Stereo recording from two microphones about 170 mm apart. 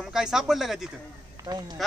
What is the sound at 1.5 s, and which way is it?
Speech, 25° right (ahead or behind).